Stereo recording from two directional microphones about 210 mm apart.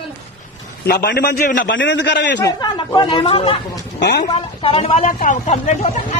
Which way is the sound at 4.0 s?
50° left (ahead or behind).